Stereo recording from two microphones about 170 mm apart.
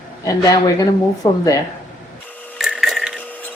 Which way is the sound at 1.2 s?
20° left (ahead or behind).